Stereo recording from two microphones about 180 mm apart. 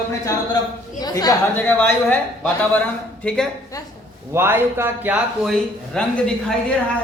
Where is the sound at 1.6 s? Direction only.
10° left (ahead or behind).